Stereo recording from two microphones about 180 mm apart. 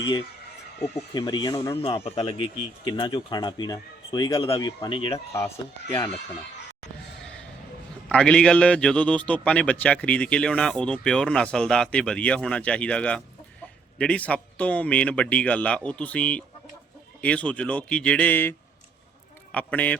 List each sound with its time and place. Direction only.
0.0 s a man's voice: 25° left (ahead or behind)
1.7 s a man's voice: 30° left (ahead or behind)
8.1 s a man's voice: 5° left (ahead or behind)